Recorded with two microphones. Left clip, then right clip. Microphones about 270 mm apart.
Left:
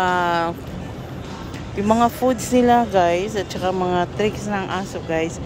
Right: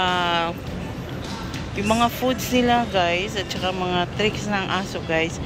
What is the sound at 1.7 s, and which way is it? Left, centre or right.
Speech, left.